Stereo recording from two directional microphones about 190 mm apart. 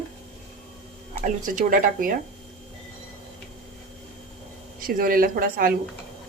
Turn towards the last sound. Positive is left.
turn(degrees=-50)  # may be behind; listen again after turning